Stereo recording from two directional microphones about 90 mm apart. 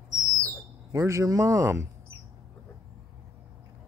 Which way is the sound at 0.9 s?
35° right (ahead or behind).